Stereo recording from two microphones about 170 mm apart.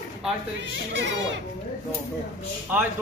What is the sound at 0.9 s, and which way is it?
Speech, 90° right.